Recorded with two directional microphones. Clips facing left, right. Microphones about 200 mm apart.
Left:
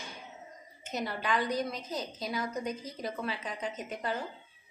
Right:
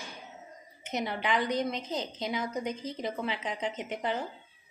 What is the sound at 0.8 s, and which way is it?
A woman's voice, 20° right (ahead or behind).